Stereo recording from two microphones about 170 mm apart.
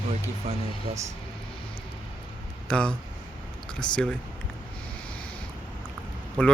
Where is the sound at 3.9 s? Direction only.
5° left (ahead or behind).